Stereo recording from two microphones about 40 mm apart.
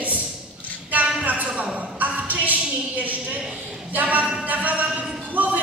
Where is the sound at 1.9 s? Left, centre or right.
Right.